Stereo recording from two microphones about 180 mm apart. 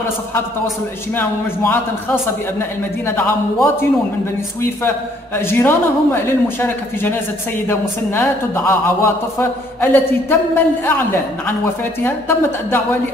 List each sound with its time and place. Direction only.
1.1 s a man's voice: 10° left (ahead or behind)